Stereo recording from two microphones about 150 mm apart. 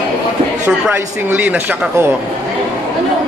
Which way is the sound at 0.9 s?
10° right (ahead or behind).